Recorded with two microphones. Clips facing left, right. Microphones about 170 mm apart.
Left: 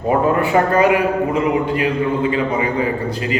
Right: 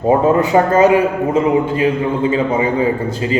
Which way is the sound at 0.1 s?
25° right (ahead or behind).